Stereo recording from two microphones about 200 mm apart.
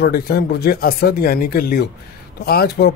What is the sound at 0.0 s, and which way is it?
A man's voice, 50° left (ahead or behind).